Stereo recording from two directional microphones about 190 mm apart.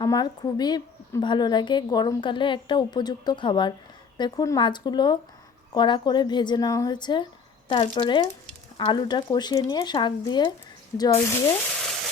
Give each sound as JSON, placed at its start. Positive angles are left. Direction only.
{"t": 0.0, "sound": "a woman's voice", "side_deg": 20}
{"t": 11.7, "sound": "frying", "side_deg": 0}